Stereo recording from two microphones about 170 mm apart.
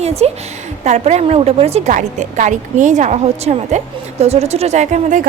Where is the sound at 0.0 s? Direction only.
40° right (ahead or behind).